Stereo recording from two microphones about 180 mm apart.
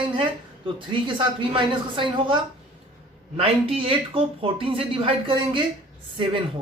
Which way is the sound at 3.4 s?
30° right (ahead or behind).